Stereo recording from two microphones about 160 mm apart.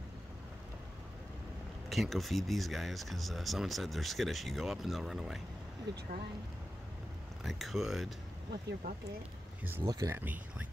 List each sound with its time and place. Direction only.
1.9 s speech: centre (ahead or behind)
5.9 s speech: 90° right
7.4 s speech: centre (ahead or behind)
8.5 s speech: 65° right (ahead or behind)
9.6 s speech: 10° right (ahead or behind)
9.8 s speech: 25° right (ahead or behind)
10.1 s speech: 10° right (ahead or behind)